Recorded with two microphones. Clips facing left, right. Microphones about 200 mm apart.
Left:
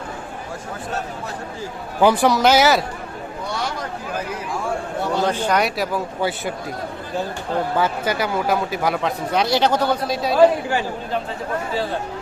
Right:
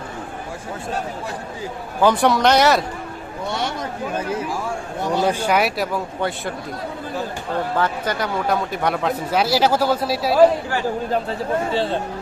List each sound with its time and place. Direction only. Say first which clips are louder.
2.1 s a man's voice: even; centre (ahead or behind)
4.1 s speech: right 4 dB; 25° right (ahead or behind)
5.0 s a man's voice: right 2 dB; 10° right (ahead or behind)
7.8 s a man's voice: left 1 dB; 5° left (ahead or behind)
11.7 s speech: right 3 dB; 30° right (ahead or behind)